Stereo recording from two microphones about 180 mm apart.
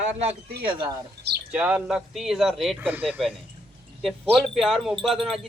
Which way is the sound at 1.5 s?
5° right (ahead or behind).